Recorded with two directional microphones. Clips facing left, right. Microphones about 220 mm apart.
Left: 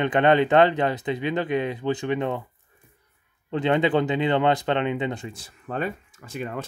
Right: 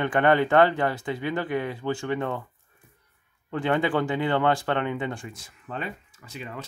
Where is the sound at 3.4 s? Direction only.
20° left (ahead or behind).